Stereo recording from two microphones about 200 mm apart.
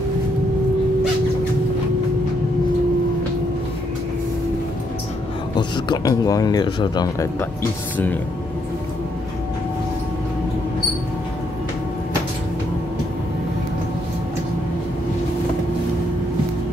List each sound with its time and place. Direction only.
5.6 s speech: 20° left (ahead or behind)